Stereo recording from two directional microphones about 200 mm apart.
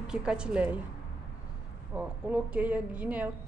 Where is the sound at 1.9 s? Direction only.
5° right (ahead or behind).